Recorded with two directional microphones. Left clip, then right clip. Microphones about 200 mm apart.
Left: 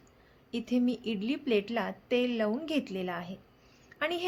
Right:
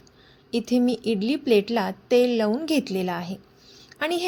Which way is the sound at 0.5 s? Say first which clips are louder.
Right 8 dB; 20° right (ahead or behind).